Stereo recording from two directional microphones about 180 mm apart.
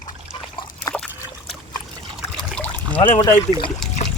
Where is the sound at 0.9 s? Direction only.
20° left (ahead or behind).